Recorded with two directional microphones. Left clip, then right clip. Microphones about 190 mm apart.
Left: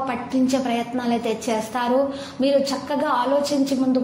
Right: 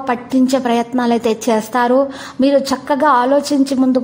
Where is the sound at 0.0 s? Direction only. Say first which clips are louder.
Right 6 dB; 45° right (ahead or behind).